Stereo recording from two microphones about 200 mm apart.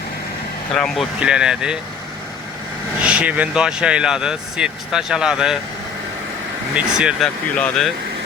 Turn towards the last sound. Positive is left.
turn(degrees=0)  # may be behind; listen again after turning